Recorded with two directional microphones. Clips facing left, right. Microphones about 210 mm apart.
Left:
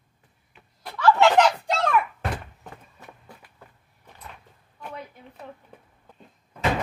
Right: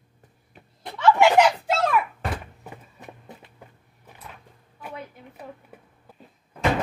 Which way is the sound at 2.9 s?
20° right (ahead or behind).